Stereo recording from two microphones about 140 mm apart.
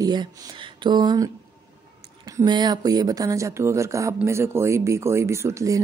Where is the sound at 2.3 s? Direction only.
30° right (ahead or behind).